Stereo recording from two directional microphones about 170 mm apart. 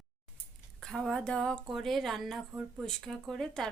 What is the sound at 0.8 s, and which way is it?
Speech, 5° left (ahead or behind).